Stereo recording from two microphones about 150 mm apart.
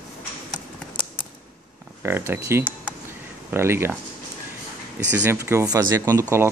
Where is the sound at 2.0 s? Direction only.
15° right (ahead or behind).